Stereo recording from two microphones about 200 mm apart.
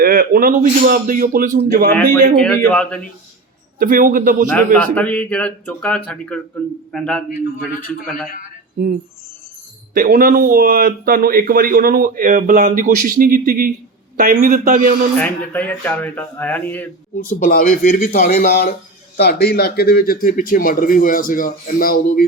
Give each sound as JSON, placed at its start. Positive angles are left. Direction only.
{"t": 0.0, "sound": "speech", "side_deg": -45}
{"t": 2.4, "sound": "speech", "side_deg": 10}
{"t": 3.8, "sound": "a man's voice", "side_deg": -40}
{"t": 4.5, "sound": "speech", "side_deg": 5}
{"t": 9.9, "sound": "a man's voice", "side_deg": -45}
{"t": 15.2, "sound": "speech", "side_deg": 10}
{"t": 17.2, "sound": "speech", "side_deg": 45}